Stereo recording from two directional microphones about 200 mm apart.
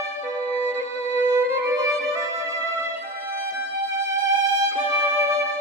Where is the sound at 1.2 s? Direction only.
10° right (ahead or behind).